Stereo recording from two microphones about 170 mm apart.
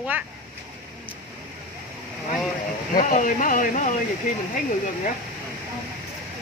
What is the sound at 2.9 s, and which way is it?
Speech, 50° left (ahead or behind).